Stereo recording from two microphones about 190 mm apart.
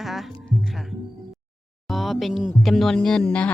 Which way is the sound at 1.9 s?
Centre (ahead or behind).